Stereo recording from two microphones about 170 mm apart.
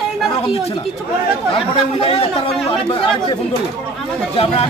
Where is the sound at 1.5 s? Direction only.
35° left (ahead or behind).